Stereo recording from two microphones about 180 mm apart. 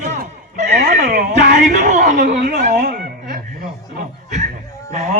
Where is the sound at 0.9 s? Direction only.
60° right (ahead or behind).